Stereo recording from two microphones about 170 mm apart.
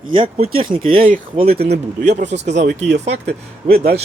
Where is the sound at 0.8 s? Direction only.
55° right (ahead or behind).